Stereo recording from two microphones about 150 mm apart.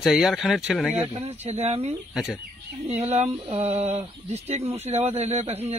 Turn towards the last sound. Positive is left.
turn(degrees=-45)  # may be behind; listen again after turning